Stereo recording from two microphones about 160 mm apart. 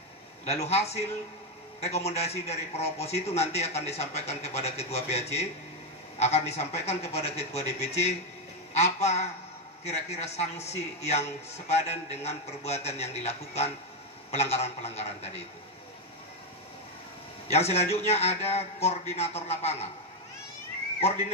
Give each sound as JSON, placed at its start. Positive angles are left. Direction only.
{"t": 0.5, "sound": "a man's voice", "side_deg": 40}
{"t": 17.5, "sound": "a man's voice", "side_deg": 40}